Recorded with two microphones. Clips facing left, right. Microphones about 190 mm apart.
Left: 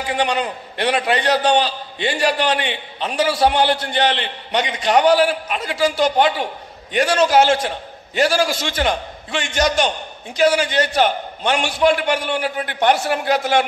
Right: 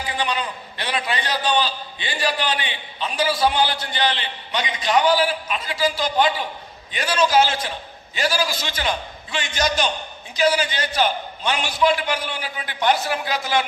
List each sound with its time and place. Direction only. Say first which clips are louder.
0.1 s a man's voice: left 6 dB; 65° left (ahead or behind)